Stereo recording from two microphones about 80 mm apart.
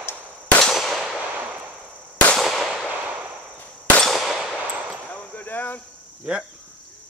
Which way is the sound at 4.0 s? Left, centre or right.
Centre.